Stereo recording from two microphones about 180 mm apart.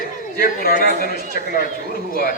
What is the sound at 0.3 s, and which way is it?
A woman's voice, 50° left (ahead or behind).